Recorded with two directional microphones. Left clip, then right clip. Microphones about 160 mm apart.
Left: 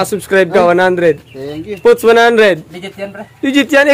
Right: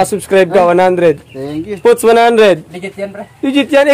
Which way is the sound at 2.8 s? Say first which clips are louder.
Right 2 dB; 40° right (ahead or behind).